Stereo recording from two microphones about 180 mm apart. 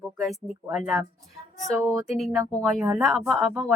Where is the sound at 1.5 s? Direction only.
20° right (ahead or behind).